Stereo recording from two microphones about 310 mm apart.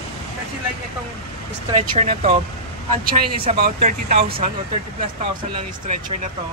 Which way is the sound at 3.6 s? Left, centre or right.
Right.